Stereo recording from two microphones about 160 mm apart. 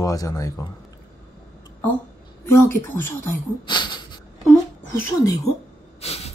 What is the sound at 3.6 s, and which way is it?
Speech, 30° left (ahead or behind).